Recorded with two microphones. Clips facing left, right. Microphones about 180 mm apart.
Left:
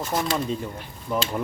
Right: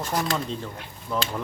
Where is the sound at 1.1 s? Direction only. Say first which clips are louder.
Left 2 dB; 15° left (ahead or behind).